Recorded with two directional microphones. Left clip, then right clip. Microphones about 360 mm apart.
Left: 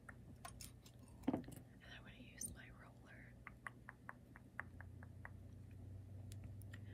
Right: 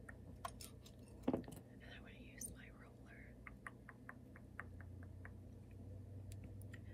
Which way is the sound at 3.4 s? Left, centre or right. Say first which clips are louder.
Left 2 dB; centre.